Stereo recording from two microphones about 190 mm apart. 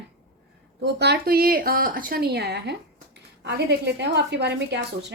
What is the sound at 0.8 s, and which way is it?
A woman's voice, 60° right (ahead or behind).